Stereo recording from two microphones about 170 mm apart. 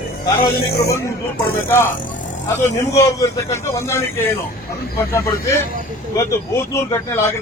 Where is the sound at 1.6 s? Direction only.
15° left (ahead or behind).